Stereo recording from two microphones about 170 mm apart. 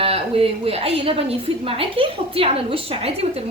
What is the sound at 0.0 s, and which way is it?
A woman's voice, 35° right (ahead or behind).